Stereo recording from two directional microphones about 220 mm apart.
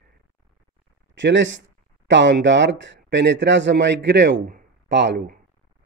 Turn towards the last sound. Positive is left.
turn(degrees=-45)  # may be behind; listen again after turning